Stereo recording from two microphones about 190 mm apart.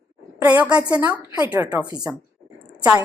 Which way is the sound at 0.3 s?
10° right (ahead or behind).